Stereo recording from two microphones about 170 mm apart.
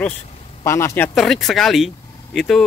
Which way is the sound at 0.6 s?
15° left (ahead or behind).